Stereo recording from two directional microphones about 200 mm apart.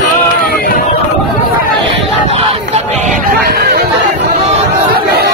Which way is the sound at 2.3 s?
30° right (ahead or behind).